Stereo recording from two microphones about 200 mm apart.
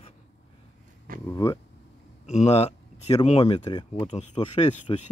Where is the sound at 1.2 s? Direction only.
15° left (ahead or behind).